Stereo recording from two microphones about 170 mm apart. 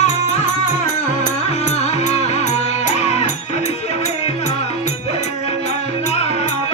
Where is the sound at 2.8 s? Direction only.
40° left (ahead or behind).